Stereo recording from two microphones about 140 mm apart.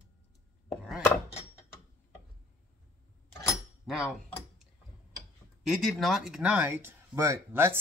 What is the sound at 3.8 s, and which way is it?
Speech, 5° right (ahead or behind).